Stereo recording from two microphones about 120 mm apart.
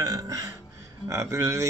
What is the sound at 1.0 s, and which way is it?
Speech, 30° right (ahead or behind).